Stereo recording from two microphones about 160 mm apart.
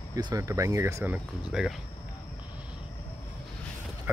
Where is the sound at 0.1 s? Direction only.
20° right (ahead or behind); by 1.8 s 5° right (ahead or behind).